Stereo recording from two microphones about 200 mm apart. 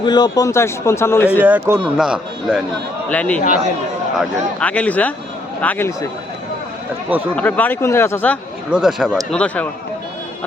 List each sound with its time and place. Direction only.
0.0 s a man's voice: 20° left (ahead or behind)
1.3 s a man's voice: 5° right (ahead or behind); by 6.1 s 10° left (ahead or behind)
7.3 s a man's voice: 5° left (ahead or behind)
8.7 s speech: centre (ahead or behind)